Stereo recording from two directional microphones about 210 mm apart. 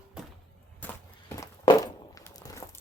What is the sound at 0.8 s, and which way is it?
Walk, 15° left (ahead or behind).